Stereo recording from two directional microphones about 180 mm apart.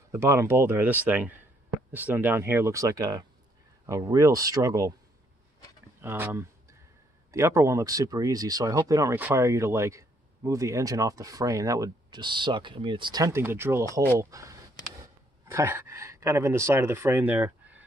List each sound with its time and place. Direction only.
0.1 s speech: 15° right (ahead or behind)
5.9 s speech: 10° right (ahead or behind)